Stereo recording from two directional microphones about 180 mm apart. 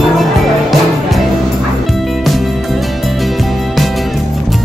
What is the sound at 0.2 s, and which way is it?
Music, centre (ahead or behind).